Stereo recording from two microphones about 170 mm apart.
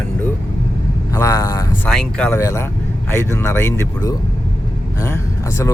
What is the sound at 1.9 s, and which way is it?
Speech, 10° left (ahead or behind).